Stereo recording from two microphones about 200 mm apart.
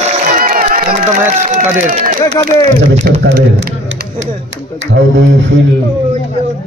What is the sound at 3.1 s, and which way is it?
Speech, 50° right (ahead or behind).